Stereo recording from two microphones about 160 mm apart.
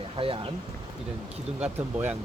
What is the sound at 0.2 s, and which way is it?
Speech, 35° right (ahead or behind).